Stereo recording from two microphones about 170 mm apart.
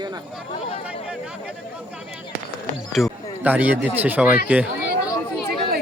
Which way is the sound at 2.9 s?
5° right (ahead or behind).